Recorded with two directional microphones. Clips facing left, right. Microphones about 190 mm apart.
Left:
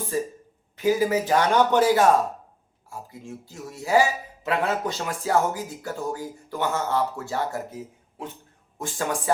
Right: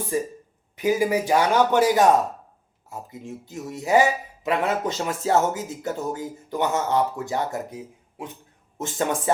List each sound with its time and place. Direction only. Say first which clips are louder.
0.1 s a man's voice: right 1 dB; 15° right (ahead or behind)
8.8 s speech: right 3 dB; 20° right (ahead or behind)